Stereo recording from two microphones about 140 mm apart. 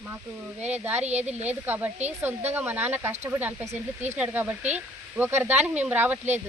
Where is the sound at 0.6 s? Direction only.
10° right (ahead or behind).